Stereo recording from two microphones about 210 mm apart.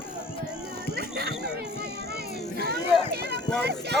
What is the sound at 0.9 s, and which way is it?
Music, 50° right (ahead or behind).